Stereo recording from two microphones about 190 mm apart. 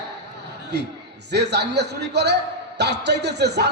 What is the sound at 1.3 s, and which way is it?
A man's voice, 60° right (ahead or behind).